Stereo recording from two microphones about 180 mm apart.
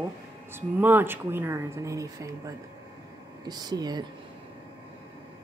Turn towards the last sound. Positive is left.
turn(degrees=-20)  # may be behind; listen again after turning